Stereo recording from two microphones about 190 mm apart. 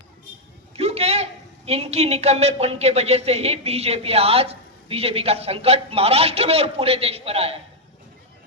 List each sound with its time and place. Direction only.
0.8 s a woman's voice: 35° right (ahead or behind)